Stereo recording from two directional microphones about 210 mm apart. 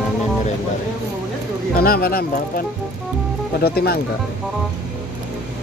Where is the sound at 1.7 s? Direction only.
45° left (ahead or behind).